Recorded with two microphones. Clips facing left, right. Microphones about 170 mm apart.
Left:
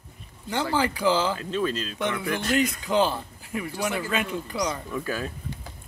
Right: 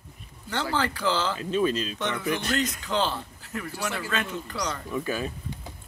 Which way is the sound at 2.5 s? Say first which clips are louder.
Left 4 dB; 10° left (ahead or behind).